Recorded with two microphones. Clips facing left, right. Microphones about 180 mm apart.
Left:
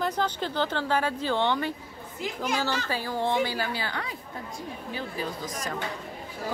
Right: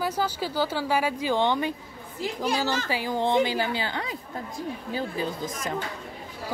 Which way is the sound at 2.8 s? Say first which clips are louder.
Right 2 dB; 15° right (ahead or behind).